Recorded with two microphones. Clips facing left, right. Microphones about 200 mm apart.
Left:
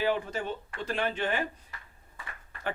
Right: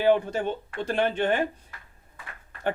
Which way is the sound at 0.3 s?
60° right (ahead or behind).